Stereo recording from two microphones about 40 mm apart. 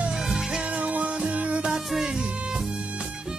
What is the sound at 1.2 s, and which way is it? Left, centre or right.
Music, right.